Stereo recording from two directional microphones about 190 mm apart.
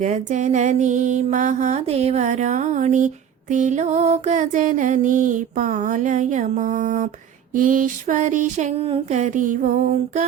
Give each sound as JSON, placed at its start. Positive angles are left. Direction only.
{"t": 0.0, "sound": "music", "side_deg": -40}